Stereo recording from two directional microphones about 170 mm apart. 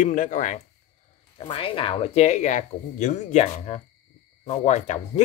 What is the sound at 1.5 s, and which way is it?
Speech, 30° left (ahead or behind).